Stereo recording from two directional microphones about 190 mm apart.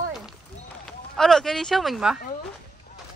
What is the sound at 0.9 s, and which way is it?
Speech, centre (ahead or behind).